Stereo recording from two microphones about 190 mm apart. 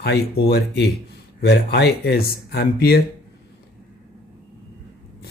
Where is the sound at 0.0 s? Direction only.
60° left (ahead or behind).